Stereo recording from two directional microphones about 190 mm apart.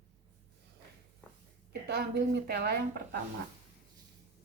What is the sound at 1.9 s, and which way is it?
A woman's voice, 55° right (ahead or behind).